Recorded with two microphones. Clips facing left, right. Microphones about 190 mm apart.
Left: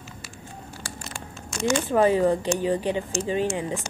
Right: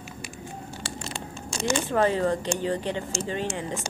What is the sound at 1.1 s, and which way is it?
Crumpling, 25° right (ahead or behind).